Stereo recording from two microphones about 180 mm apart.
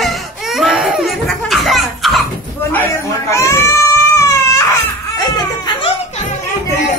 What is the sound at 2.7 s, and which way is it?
Baby cry, 15° left (ahead or behind).